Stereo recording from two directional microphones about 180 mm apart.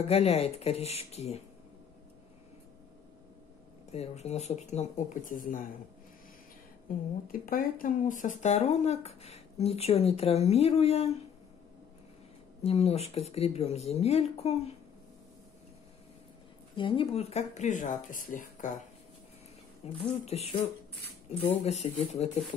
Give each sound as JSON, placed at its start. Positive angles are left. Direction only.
{"t": 0.0, "sound": "speech", "side_deg": 35}
{"t": 3.9, "sound": "speech", "side_deg": 35}
{"t": 7.2, "sound": "speech", "side_deg": 50}
{"t": 12.6, "sound": "speech", "side_deg": 35}
{"t": 16.7, "sound": "speech", "side_deg": 30}
{"t": 20.0, "sound": "speech", "side_deg": 35}
{"t": 21.6, "sound": "speech", "side_deg": 40}